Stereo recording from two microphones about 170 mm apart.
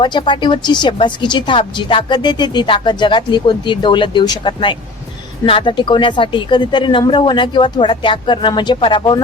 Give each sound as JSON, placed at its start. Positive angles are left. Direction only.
{"t": 0.0, "sound": "speech", "side_deg": 25}